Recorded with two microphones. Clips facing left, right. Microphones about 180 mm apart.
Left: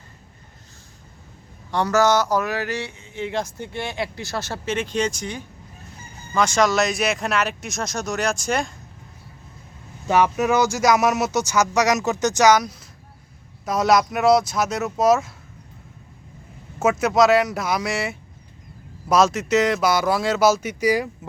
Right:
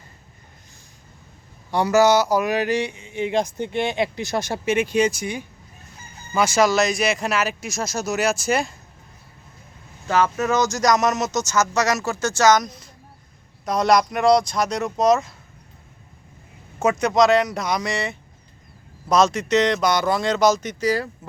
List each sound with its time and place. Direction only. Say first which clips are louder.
1.7 s a sound: right 2 dB; 10° right (ahead or behind)
6.3 s speech: right 1 dB; 5° right (ahead or behind)
10.1 s speech: left 2 dB; 15° left (ahead or behind)
16.8 s speech: even; 5° left (ahead or behind)